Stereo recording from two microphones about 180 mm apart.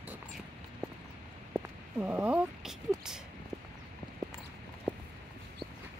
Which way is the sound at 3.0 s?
5° right (ahead or behind).